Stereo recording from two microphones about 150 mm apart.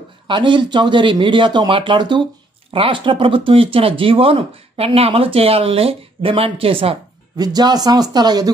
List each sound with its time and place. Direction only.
0.3 s speech: 30° right (ahead or behind)
7.3 s speech: 25° right (ahead or behind)